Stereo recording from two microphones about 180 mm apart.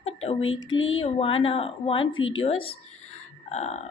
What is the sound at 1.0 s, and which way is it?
A woman's voice, 30° left (ahead or behind).